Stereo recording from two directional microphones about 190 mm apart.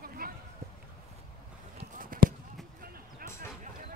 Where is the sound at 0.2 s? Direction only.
50° right (ahead or behind).